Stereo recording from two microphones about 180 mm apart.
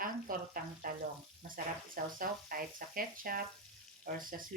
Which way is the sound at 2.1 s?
50° right (ahead or behind).